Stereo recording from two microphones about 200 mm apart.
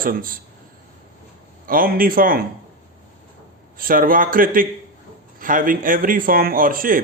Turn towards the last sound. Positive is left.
turn(degrees=-45)  # may be behind; listen again after turning